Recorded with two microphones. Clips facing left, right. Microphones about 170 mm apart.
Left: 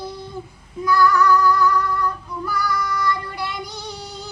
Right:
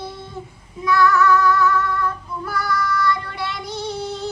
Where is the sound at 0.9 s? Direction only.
Centre (ahead or behind).